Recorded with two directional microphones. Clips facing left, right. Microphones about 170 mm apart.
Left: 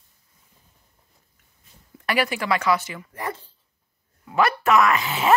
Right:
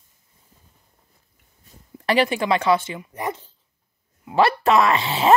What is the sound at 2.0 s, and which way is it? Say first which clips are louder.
Speech: right 4 dB; 25° right (ahead or behind).